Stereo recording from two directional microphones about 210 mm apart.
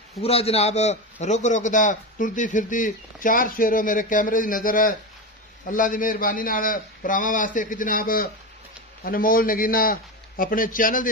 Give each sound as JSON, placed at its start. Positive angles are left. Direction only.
{"t": 0.1, "sound": "a man's voice", "side_deg": 30}